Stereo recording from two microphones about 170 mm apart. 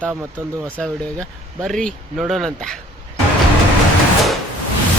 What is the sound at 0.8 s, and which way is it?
Speech, 5° left (ahead or behind).